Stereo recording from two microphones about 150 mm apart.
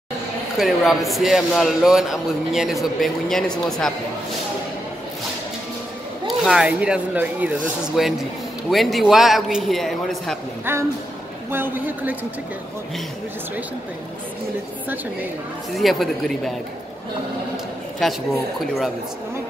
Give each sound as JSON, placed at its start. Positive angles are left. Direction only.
{"t": 0.6, "sound": "a man's voice", "side_deg": 0}
{"t": 6.2, "sound": "a man's voice", "side_deg": -5}
{"t": 10.6, "sound": "a woman's voice", "side_deg": -15}
{"t": 15.7, "sound": "a man's voice", "side_deg": 0}
{"t": 18.0, "sound": "a man's voice", "side_deg": 0}